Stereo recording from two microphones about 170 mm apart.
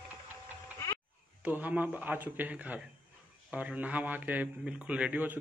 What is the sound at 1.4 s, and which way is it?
Speech, 10° right (ahead or behind).